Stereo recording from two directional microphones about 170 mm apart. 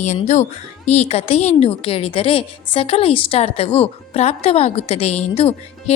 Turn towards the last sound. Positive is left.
turn(degrees=35)  # may be behind; listen again after turning